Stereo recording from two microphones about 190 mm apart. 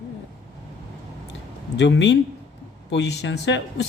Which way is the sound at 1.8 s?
70° left (ahead or behind).